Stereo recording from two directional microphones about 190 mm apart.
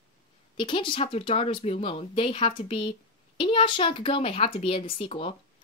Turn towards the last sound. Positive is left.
turn(degrees=30)  # may be behind; listen again after turning